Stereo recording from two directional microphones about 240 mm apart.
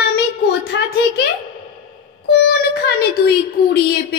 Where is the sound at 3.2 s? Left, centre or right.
Left.